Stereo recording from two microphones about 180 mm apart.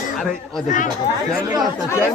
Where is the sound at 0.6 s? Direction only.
45° left (ahead or behind).